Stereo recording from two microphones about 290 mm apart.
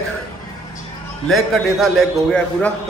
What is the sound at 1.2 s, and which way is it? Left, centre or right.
A man's voice, centre.